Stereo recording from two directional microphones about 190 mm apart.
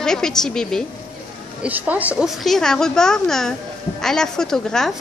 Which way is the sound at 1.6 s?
10° right (ahead or behind).